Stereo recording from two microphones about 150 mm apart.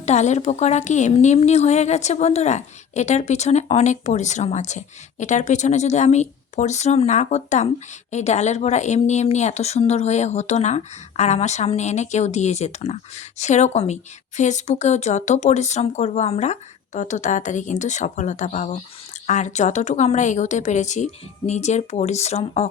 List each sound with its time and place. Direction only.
0.0 s speech: 50° left (ahead or behind)